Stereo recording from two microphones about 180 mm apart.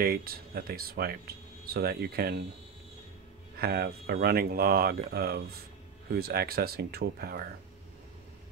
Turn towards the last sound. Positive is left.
turn(degrees=-60)  # may be behind; listen again after turning